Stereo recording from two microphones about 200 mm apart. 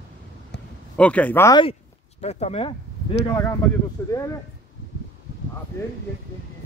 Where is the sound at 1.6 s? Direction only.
30° left (ahead or behind).